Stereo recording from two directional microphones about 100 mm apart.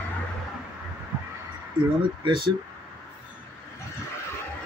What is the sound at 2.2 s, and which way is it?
Speech, 55° right (ahead or behind).